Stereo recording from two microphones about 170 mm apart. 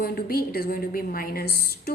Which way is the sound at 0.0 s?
60° left (ahead or behind).